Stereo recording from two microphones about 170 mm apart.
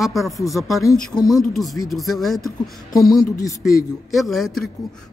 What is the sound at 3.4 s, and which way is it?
Speech, 20° left (ahead or behind).